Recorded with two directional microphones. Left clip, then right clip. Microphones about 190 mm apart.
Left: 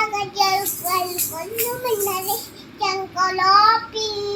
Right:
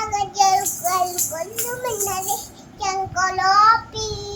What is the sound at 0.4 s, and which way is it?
Child singing, 10° right (ahead or behind).